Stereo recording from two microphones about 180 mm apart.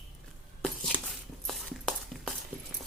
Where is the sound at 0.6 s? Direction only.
Centre (ahead or behind).